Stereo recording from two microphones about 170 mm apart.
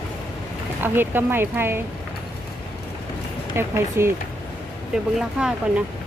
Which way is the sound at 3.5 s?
15° right (ahead or behind).